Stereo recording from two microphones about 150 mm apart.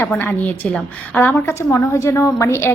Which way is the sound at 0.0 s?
10° left (ahead or behind).